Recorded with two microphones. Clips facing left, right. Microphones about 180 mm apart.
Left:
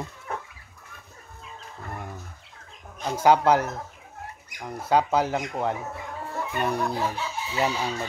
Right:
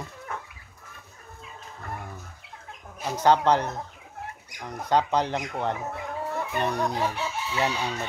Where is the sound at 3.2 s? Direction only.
10° left (ahead or behind).